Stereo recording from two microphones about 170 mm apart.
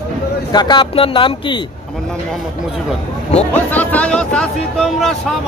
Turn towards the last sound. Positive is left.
turn(degrees=0)  # may be behind; listen again after turning